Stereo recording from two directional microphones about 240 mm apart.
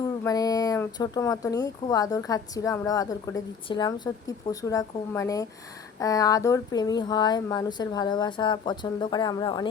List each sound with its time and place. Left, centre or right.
0.0 s speech: centre